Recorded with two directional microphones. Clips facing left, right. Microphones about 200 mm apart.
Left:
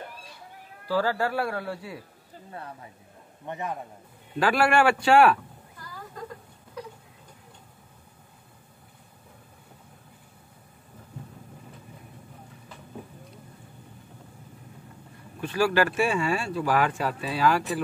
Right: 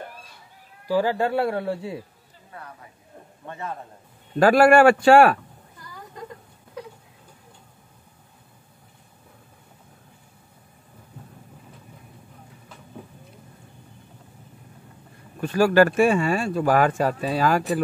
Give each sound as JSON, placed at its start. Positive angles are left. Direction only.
{"t": 0.8, "sound": "speech", "side_deg": -15}
{"t": 3.4, "sound": "a man's voice", "side_deg": 15}
{"t": 4.4, "sound": "speech", "side_deg": -45}
{"t": 15.4, "sound": "speech", "side_deg": -45}